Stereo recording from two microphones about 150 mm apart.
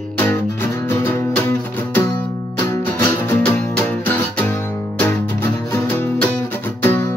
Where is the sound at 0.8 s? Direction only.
15° left (ahead or behind).